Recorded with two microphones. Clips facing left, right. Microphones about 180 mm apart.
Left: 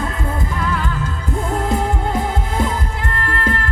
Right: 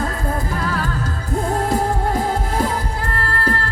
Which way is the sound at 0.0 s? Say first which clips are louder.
Right 1 dB; 35° right (ahead or behind).